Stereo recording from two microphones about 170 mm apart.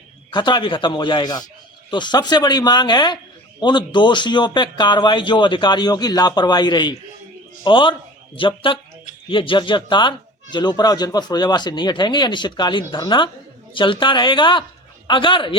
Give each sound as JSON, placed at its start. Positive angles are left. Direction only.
{"t": 0.3, "sound": "speech", "side_deg": 25}